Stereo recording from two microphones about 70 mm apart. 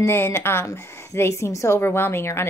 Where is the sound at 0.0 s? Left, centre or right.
Left.